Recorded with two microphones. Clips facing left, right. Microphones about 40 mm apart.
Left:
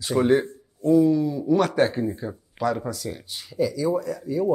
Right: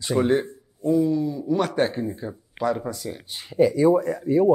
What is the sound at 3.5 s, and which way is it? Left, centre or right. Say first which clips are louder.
Speech: right 6 dB; right.